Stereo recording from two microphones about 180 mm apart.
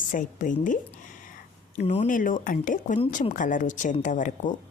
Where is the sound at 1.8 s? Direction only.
35° left (ahead or behind).